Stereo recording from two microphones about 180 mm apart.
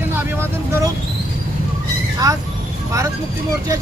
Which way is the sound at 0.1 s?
10° right (ahead or behind).